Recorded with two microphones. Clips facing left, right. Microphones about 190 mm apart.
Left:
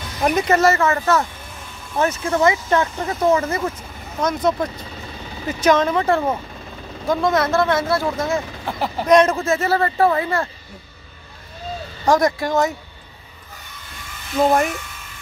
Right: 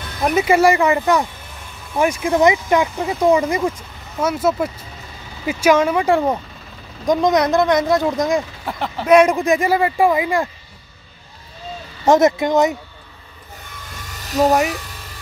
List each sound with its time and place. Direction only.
0.2 s speech: 5° right (ahead or behind)
8.6 s speech: 5° left (ahead or behind)
9.0 s speech: 10° right (ahead or behind)
12.0 s speech: 20° right (ahead or behind)
14.1 s a sound: 40° right (ahead or behind)